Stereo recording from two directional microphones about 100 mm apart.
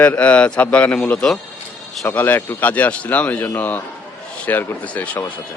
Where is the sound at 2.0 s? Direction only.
20° left (ahead or behind).